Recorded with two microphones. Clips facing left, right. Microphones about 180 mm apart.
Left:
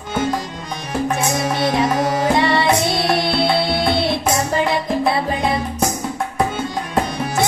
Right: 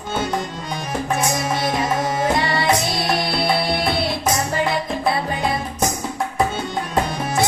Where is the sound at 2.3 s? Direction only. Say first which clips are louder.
Left 3 dB; 25° left (ahead or behind).